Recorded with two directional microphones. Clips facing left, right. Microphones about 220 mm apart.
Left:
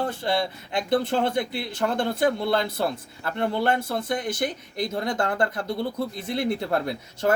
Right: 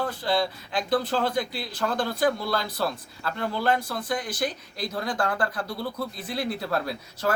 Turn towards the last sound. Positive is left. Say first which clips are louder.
# left 3 dB
turn(degrees=20)  # may be behind; listen again after turning